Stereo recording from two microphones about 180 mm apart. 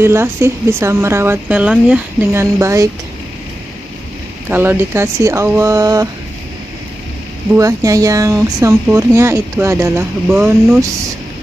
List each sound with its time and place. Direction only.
0.0 s speech: 15° right (ahead or behind)
4.5 s speech: 10° right (ahead or behind)
7.5 s speech: 20° right (ahead or behind)